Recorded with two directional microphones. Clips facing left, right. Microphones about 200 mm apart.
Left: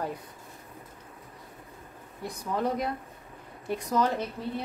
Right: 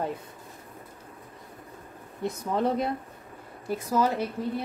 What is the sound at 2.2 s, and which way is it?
Speech, 25° right (ahead or behind).